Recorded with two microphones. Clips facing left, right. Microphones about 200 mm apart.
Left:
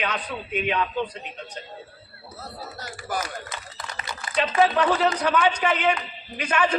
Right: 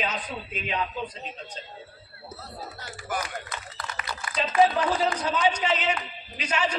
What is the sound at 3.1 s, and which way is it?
Speech, 35° left (ahead or behind).